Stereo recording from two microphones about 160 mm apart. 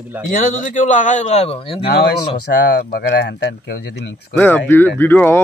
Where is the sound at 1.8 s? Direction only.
90° left.